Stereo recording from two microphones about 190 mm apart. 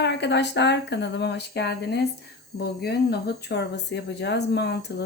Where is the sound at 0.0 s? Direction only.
65° left (ahead or behind).